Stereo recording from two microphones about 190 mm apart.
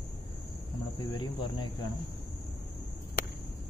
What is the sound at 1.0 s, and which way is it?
Speech, 25° left (ahead or behind).